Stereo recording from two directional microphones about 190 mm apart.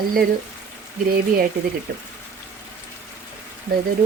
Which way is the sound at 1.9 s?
50° right (ahead or behind).